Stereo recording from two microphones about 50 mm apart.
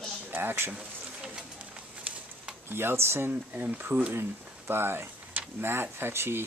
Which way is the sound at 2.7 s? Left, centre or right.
Right.